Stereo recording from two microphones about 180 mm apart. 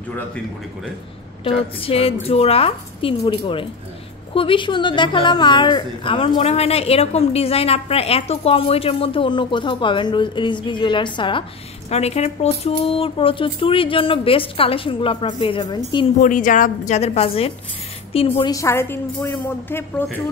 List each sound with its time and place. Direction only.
1.4 s a woman's voice: 30° left (ahead or behind)
16.2 s a woman's voice: 45° left (ahead or behind)
18.4 s a woman's voice: 20° left (ahead or behind)